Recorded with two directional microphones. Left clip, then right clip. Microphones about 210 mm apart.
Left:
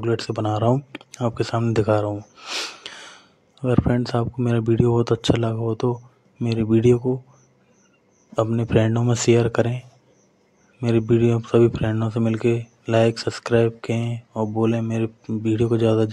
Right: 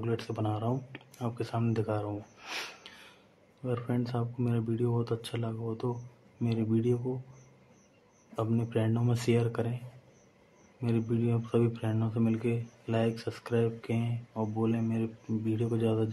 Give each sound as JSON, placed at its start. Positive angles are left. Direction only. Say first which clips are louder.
{"t": 0.0, "sound": "speech", "louder": "left 10 dB", "side_deg": 30}
{"t": 2.3, "sound": "speech", "louder": "left 10 dB", "side_deg": 20}
{"t": 2.9, "sound": "speech", "louder": "left 13 dB", "side_deg": 35}
{"t": 8.4, "sound": "speech", "louder": "left 12 dB", "side_deg": 30}
{"t": 10.8, "sound": "speech", "louder": "left 13 dB", "side_deg": 35}